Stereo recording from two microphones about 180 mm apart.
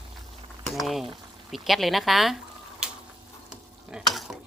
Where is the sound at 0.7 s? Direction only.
Centre (ahead or behind).